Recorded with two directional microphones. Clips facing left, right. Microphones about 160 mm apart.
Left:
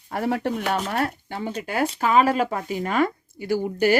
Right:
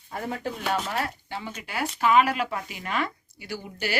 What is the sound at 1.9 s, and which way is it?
Speech, 35° left (ahead or behind).